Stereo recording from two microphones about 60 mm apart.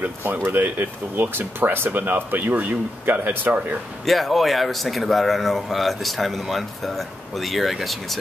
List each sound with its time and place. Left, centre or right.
0.0 s speech: right
4.0 s speech: centre